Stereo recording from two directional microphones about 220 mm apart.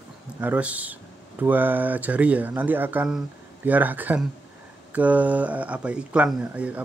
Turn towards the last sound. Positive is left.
turn(degrees=-5)  # may be behind; listen again after turning